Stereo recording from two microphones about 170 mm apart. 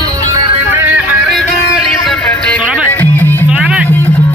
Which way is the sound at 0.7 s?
10° right (ahead or behind).